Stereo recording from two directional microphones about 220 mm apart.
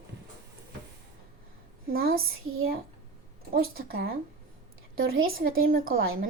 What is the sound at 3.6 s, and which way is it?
Speech, 40° right (ahead or behind).